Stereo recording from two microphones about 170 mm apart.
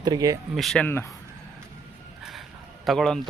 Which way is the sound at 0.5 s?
Centre (ahead or behind).